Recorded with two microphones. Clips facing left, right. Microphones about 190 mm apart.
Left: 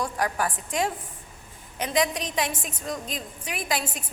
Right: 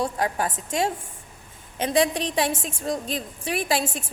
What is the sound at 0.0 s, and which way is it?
A woman's voice, 25° right (ahead or behind).